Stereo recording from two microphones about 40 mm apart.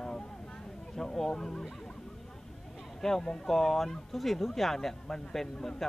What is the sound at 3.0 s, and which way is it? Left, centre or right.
Speech, centre.